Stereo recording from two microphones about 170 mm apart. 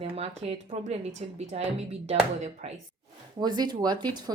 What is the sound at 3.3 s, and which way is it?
Speech, 25° right (ahead or behind).